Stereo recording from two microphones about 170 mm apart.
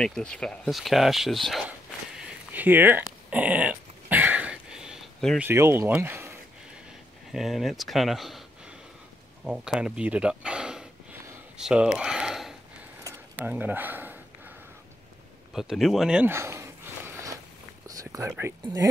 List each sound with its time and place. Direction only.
0.0 s speech: 5° left (ahead or behind)
2.5 s dog: 10° right (ahead or behind)
5.4 s speech: 15° right (ahead or behind)
7.3 s speech: centre (ahead or behind)
11.5 s a sound: 5° right (ahead or behind)
13.4 s speech: 10° right (ahead or behind)
15.5 s a sound: centre (ahead or behind); by 18.3 s 20° right (ahead or behind)
18.4 s speech: 20° right (ahead or behind)